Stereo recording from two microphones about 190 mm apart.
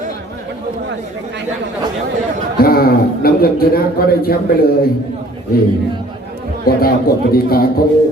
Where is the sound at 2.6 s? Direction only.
50° left (ahead or behind).